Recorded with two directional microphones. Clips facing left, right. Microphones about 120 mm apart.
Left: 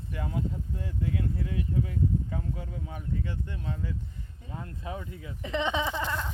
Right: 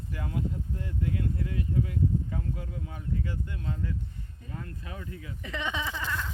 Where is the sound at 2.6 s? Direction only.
30° left (ahead or behind).